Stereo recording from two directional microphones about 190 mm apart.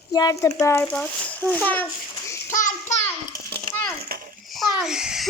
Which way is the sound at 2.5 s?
40° left (ahead or behind).